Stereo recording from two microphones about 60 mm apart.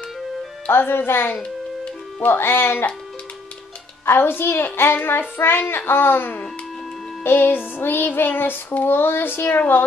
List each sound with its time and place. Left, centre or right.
0.7 s child singing: left
4.0 s child singing: left